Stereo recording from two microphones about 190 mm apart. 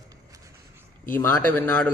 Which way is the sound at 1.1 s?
10° left (ahead or behind).